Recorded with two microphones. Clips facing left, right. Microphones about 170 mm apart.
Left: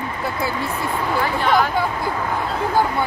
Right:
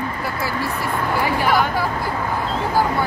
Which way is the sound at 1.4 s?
5° right (ahead or behind).